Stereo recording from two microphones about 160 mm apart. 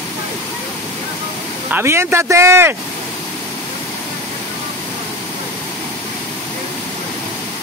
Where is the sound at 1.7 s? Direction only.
15° right (ahead or behind).